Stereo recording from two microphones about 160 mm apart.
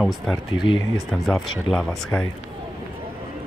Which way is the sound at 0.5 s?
30° left (ahead or behind).